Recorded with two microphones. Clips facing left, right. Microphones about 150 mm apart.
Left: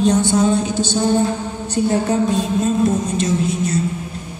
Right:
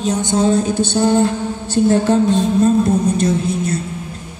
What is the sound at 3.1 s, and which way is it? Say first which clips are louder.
Speech: right 2 dB; 55° right (ahead or behind).